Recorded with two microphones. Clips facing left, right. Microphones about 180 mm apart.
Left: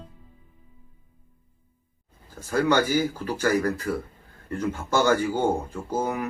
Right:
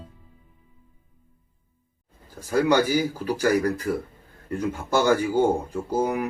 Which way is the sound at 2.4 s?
15° right (ahead or behind).